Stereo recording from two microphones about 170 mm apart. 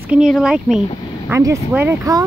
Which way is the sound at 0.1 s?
5° right (ahead or behind).